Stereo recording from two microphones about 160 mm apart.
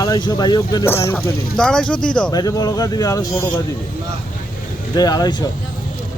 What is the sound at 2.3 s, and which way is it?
Speech, 25° left (ahead or behind).